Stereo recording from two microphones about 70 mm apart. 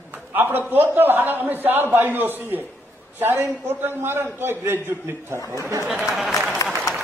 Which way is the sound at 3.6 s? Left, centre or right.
Right.